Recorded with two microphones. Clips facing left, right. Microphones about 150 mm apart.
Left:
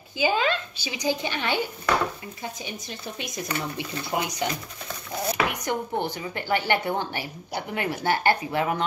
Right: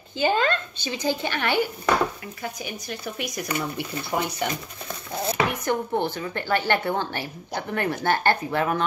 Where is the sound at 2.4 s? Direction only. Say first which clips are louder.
Right 4 dB; 25° left (ahead or behind).